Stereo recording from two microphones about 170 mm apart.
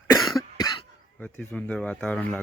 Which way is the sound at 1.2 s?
5° left (ahead or behind).